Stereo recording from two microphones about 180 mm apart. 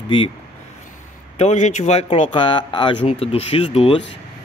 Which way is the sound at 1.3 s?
40° left (ahead or behind).